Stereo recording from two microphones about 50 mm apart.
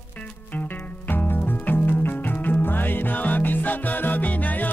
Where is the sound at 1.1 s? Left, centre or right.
Left.